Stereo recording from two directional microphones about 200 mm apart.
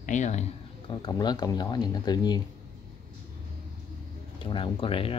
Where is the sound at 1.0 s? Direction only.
20° left (ahead or behind).